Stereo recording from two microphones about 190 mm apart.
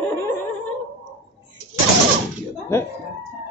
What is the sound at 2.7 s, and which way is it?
Speech, 15° left (ahead or behind).